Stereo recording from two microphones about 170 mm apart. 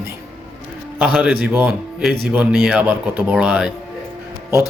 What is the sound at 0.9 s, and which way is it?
A man's voice, 5° right (ahead or behind).